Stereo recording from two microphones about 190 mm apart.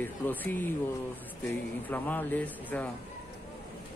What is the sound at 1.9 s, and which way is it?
Speech, 10° left (ahead or behind).